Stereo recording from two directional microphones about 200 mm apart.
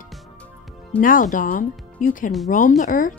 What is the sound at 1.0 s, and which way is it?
A woman's voice, 40° left (ahead or behind).